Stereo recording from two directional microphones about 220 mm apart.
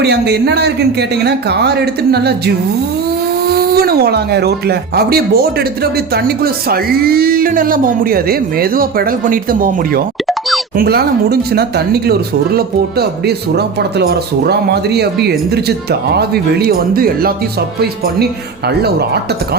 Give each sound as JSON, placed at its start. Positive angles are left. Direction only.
{"t": 0.0, "sound": "speech", "side_deg": -50}
{"t": 3.4, "sound": "speech", "side_deg": -45}